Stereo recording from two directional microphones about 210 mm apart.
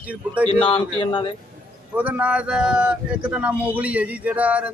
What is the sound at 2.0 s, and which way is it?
Speech, 5° right (ahead or behind).